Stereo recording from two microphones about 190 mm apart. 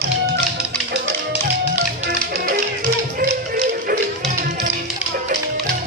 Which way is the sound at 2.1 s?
50° right (ahead or behind).